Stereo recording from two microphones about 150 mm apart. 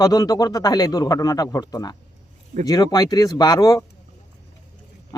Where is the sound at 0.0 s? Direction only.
25° left (ahead or behind).